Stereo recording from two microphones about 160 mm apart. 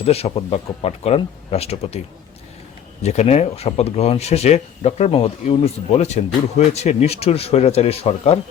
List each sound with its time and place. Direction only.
0.0 s speech: 40° left (ahead or behind)
3.0 s speech: 45° left (ahead or behind)